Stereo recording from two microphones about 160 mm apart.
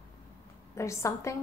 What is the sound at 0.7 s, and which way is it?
Speech, 20° left (ahead or behind).